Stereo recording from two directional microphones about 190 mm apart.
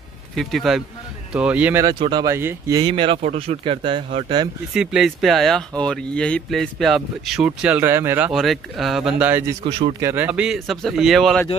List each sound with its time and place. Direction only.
0.4 s speech: centre (ahead or behind)
2.0 s speech: 25° right (ahead or behind)
2.8 s speech: 25° right (ahead or behind)
4.7 s speech: centre (ahead or behind)
8.3 s speech: centre (ahead or behind)
9.6 s speech: 30° right (ahead or behind)
9.9 s speech: 10° right (ahead or behind)